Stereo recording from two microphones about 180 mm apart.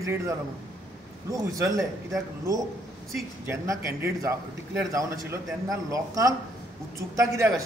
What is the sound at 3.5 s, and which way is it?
Speech, 15° right (ahead or behind).